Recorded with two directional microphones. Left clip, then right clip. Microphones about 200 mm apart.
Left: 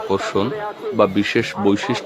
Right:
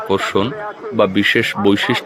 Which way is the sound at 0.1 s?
5° right (ahead or behind).